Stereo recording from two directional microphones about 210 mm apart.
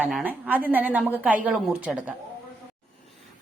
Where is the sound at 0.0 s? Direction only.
10° right (ahead or behind).